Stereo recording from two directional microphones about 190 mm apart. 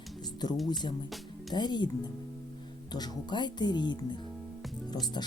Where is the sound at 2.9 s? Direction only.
20° left (ahead or behind).